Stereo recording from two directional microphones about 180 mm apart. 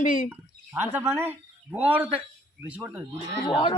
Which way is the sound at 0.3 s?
10° right (ahead or behind).